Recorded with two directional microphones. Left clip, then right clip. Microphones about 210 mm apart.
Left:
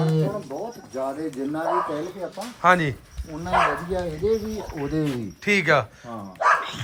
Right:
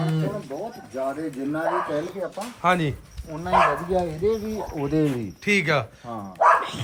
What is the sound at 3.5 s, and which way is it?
Speech, 50° right (ahead or behind).